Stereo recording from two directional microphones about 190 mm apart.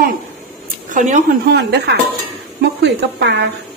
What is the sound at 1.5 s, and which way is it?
A woman's voice, 60° right (ahead or behind).